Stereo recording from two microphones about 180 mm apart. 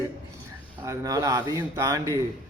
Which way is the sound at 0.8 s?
15° right (ahead or behind).